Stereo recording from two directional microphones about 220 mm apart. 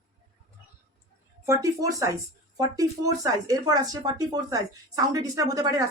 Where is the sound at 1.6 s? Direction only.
15° right (ahead or behind).